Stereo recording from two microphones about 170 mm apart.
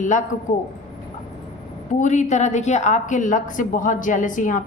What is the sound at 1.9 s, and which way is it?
A woman's voice, 45° left (ahead or behind).